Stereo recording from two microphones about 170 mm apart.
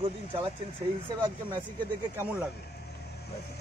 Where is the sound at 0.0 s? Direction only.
30° right (ahead or behind).